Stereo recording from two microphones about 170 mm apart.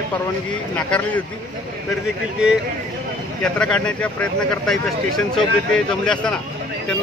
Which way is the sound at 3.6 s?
5° left (ahead or behind).